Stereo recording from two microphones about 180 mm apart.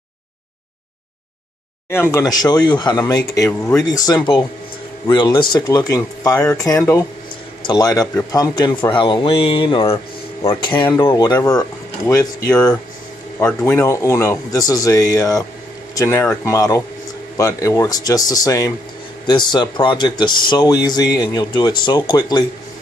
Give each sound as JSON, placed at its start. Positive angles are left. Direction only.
{"t": 1.9, "sound": "speech", "side_deg": 15}
{"t": 13.4, "sound": "speech", "side_deg": 10}